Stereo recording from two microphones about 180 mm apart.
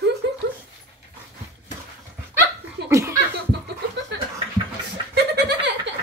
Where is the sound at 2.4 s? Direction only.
15° right (ahead or behind).